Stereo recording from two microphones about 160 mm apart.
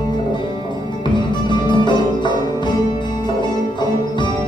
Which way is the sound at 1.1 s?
30° left (ahead or behind).